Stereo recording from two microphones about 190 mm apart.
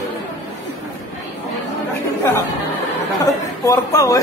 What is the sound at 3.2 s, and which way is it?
Speech, 15° left (ahead or behind).